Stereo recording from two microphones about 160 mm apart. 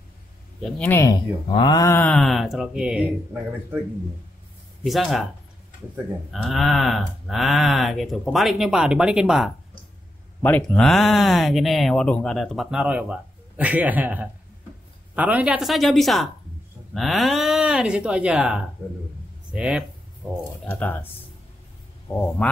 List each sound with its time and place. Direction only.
0.6 s speech: 10° left (ahead or behind); by 1.9 s 30° left (ahead or behind)
1.9 s speech: 10° left (ahead or behind)
4.8 s speech: centre (ahead or behind)
6.3 s speech: centre (ahead or behind)
10.4 s speech: 10° left (ahead or behind); by 20.4 s 10° right (ahead or behind)
20.6 s speech: 10° left (ahead or behind)
22.0 s speech: 10° left (ahead or behind)